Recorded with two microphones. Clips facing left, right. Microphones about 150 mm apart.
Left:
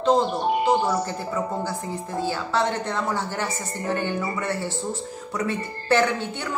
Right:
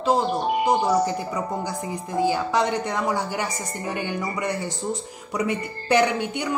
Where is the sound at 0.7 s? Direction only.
15° right (ahead or behind).